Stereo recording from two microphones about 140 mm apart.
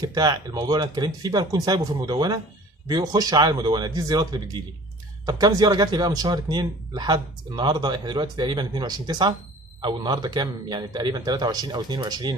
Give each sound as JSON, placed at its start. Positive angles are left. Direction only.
{"t": 0.0, "sound": "speech", "side_deg": -30}